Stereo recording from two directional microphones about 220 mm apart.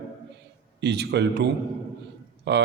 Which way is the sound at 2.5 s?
50° right (ahead or behind).